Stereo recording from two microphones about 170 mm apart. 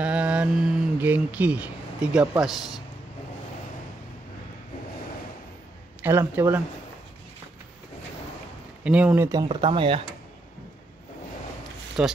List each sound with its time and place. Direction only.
0.0 s speech: 5° right (ahead or behind)
6.0 s speech: 15° right (ahead or behind)
8.8 s speech: 10° right (ahead or behind); by 10.0 s 35° right (ahead or behind)
12.0 s speech: 5° right (ahead or behind)